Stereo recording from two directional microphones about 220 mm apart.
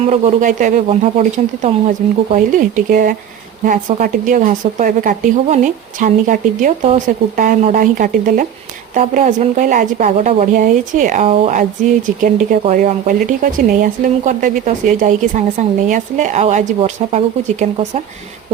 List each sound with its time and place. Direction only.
0.0 s speech: 30° right (ahead or behind)